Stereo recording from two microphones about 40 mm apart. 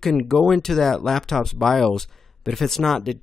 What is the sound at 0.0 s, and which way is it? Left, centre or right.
Speech, centre.